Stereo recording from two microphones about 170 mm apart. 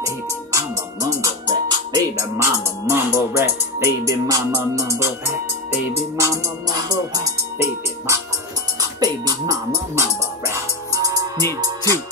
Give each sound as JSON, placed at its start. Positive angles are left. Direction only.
{"t": 0.5, "sound": "music", "side_deg": -20}
{"t": 9.0, "sound": "music", "side_deg": -20}